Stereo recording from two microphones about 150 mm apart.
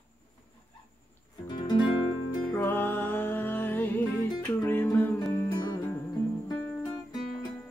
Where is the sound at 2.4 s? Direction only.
10° left (ahead or behind).